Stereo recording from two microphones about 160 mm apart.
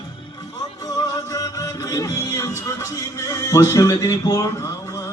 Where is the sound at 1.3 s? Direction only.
20° left (ahead or behind).